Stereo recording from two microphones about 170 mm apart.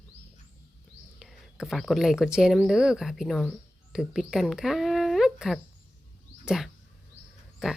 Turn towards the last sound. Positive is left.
turn(degrees=-5)  # may be behind; listen again after turning